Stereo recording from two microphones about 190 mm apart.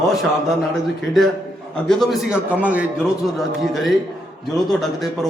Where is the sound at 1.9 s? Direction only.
Centre (ahead or behind).